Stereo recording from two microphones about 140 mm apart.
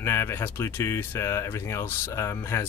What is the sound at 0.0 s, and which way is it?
Speech, 15° left (ahead or behind).